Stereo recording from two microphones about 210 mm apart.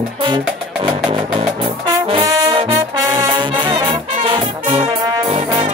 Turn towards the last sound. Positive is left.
turn(degrees=-20)  # may be behind; listen again after turning